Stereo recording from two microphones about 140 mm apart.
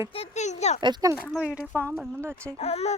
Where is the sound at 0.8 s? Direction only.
30° right (ahead or behind).